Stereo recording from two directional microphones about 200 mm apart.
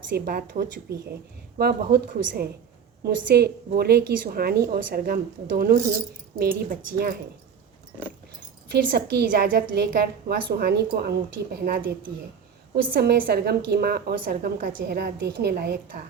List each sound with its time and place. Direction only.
0.3 s a woman's voice: 45° right (ahead or behind)
8.7 s a woman's voice: 50° right (ahead or behind)